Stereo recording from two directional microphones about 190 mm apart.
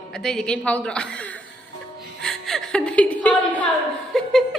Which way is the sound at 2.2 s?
Centre (ahead or behind).